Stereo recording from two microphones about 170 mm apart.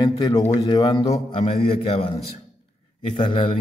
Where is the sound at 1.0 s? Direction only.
40° left (ahead or behind).